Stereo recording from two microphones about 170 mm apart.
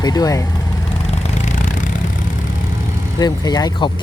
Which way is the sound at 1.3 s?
45° left (ahead or behind).